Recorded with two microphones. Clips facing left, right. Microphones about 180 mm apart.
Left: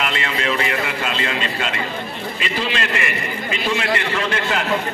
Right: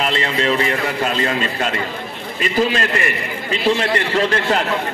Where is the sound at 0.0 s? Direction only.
35° right (ahead or behind).